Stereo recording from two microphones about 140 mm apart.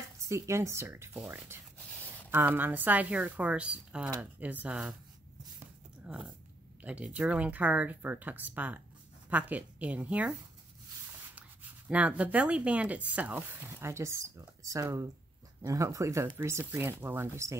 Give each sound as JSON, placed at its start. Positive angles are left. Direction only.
{"t": 0.3, "sound": "speech", "side_deg": -20}
{"t": 1.1, "sound": "speech", "side_deg": -5}
{"t": 6.0, "sound": "speech", "side_deg": -10}
{"t": 11.1, "sound": "a sound", "side_deg": -15}
{"t": 11.9, "sound": "speech", "side_deg": -10}